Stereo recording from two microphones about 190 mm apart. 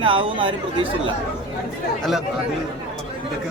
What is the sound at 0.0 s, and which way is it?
Speech, 25° right (ahead or behind).